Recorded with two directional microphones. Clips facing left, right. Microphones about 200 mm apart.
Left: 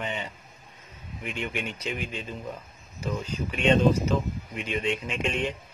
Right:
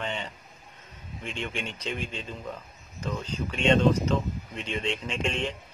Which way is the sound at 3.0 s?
10° left (ahead or behind).